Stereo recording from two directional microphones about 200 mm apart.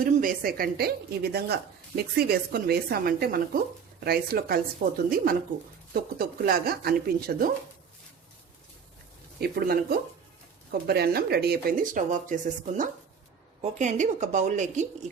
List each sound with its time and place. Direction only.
0.0 s speech: 45° right (ahead or behind)
9.4 s a woman's voice: 50° right (ahead or behind)